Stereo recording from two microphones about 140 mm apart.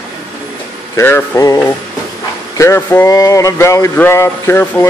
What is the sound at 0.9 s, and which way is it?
A man's voice, 20° left (ahead or behind).